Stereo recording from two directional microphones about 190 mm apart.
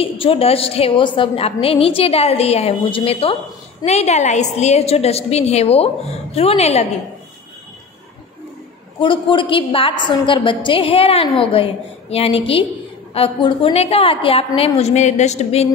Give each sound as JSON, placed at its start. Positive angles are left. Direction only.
{"t": 0.0, "sound": "a woman's voice", "side_deg": 30}
{"t": 9.0, "sound": "a woman's voice", "side_deg": 25}